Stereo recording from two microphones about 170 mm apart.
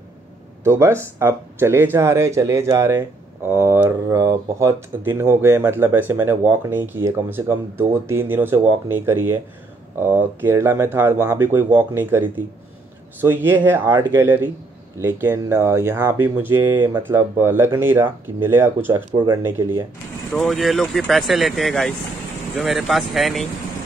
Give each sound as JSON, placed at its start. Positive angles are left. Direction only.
{"t": 0.7, "sound": "speech", "side_deg": -15}
{"t": 19.1, "sound": "speech", "side_deg": -25}
{"t": 19.4, "sound": "speech", "side_deg": -15}
{"t": 20.3, "sound": "speech", "side_deg": 0}